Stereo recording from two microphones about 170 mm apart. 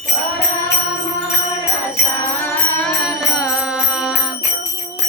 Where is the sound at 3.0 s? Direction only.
5° right (ahead or behind).